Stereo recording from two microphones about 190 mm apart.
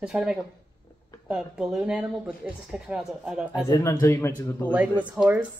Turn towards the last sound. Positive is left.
turn(degrees=-10)  # may be behind; listen again after turning